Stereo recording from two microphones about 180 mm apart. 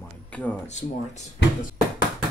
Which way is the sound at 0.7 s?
40° left (ahead or behind).